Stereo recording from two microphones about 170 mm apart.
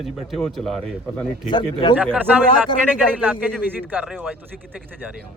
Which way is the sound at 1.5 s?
30° left (ahead or behind).